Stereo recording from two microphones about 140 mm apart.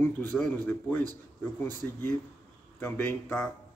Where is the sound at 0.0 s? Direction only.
15° left (ahead or behind).